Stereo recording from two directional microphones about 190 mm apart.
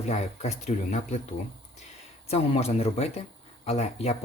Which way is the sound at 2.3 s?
35° left (ahead or behind).